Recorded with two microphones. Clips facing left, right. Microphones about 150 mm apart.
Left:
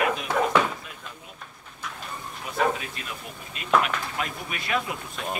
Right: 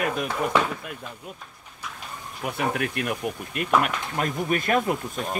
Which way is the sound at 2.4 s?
65° right (ahead or behind).